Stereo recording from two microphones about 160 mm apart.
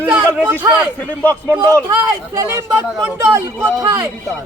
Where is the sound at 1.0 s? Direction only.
10° left (ahead or behind).